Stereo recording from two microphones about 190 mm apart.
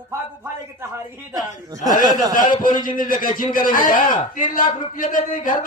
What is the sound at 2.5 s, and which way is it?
A man's voice, 45° left (ahead or behind).